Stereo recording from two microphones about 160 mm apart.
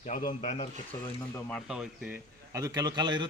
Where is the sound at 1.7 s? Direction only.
5° right (ahead or behind).